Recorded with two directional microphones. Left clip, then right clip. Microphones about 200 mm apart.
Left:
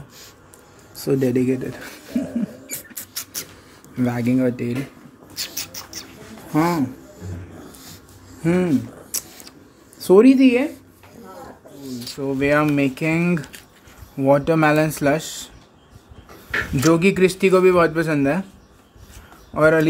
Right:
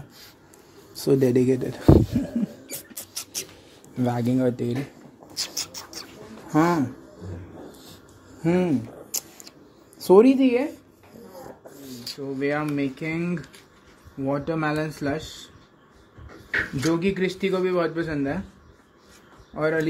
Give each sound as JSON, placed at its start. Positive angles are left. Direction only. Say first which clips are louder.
{"t": 0.9, "sound": "speech", "louder": "even", "side_deg": -15}
{"t": 2.6, "sound": "rodents", "louder": "left 4 dB", "side_deg": -10}
{"t": 3.9, "sound": "speech", "louder": "left 3 dB", "side_deg": -5}
{"t": 5.3, "sound": "rodents", "louder": "left 1 dB", "side_deg": -10}
{"t": 6.5, "sound": "speech", "louder": "left 1 dB", "side_deg": -5}
{"t": 8.4, "sound": "a sound", "louder": "left 3 dB", "side_deg": 0}
{"t": 9.9, "sound": "speech", "louder": "left 3 dB", "side_deg": 0}
{"t": 11.9, "sound": "a sound", "louder": "left 4 dB", "side_deg": -5}
{"t": 12.2, "sound": "speech", "louder": "left 8 dB", "side_deg": 40}
{"t": 16.8, "sound": "speech", "louder": "left 12 dB", "side_deg": 40}
{"t": 19.5, "sound": "speech", "louder": "left 9 dB", "side_deg": 40}